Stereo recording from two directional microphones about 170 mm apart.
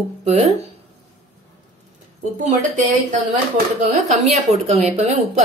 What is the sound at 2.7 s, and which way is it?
A woman's voice, 50° right (ahead or behind).